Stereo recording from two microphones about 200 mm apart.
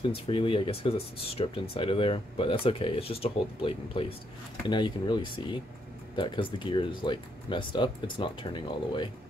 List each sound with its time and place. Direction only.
0.1 s speech: 25° left (ahead or behind)